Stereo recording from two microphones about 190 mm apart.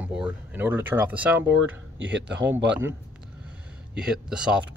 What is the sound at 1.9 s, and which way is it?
Speech, 70° right (ahead or behind).